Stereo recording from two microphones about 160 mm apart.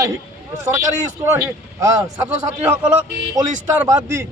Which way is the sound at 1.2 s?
15° right (ahead or behind).